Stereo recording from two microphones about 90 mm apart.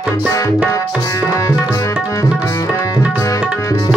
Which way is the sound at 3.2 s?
40° left (ahead or behind).